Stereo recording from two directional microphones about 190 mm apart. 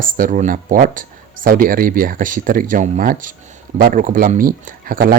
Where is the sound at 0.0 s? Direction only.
45° right (ahead or behind).